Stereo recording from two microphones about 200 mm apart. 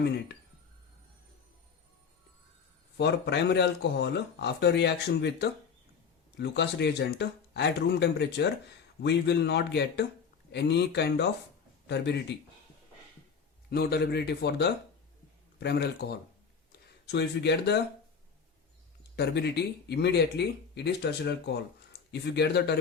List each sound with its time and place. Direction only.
3.0 s a man's voice: 55° left (ahead or behind)
13.7 s speech: 55° left (ahead or behind)
19.1 s speech: 55° left (ahead or behind)